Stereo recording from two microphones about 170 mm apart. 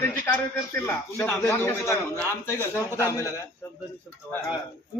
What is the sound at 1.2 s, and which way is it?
A man's voice, 10° left (ahead or behind).